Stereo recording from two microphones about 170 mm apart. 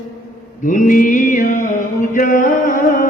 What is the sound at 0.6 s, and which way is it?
Mantra, 50° left (ahead or behind).